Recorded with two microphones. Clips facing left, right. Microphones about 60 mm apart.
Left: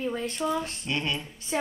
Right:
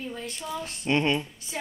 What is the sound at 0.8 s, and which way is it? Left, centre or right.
Speech, right.